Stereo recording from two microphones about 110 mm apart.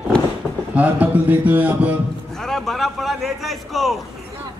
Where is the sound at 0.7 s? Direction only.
15° right (ahead or behind).